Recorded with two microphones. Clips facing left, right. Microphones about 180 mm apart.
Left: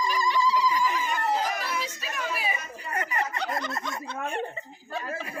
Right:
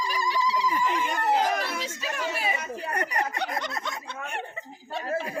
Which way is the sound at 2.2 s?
70° right (ahead or behind).